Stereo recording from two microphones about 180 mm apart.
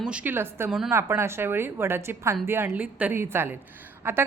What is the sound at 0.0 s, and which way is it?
A woman's voice, 5° right (ahead or behind).